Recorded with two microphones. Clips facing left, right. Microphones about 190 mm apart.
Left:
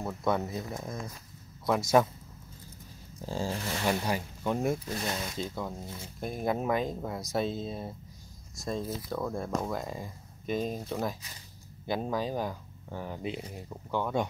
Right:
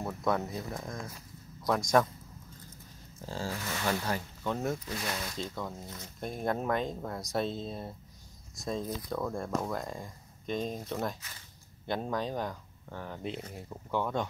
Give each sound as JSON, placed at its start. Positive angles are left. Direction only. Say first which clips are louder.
{"t": 0.0, "sound": "speech", "louder": "left 1 dB", "side_deg": 0}
{"t": 3.2, "sound": "speech", "louder": "left 4 dB", "side_deg": 15}
{"t": 3.4, "sound": "speech", "louder": "left 1 dB", "side_deg": 30}
{"t": 3.8, "sound": "speech", "louder": "left 2 dB", "side_deg": 15}
{"t": 5.3, "sound": "speech", "louder": "left 2 dB", "side_deg": 5}